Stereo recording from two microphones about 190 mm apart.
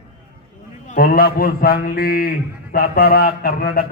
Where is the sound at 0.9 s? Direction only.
50° left (ahead or behind).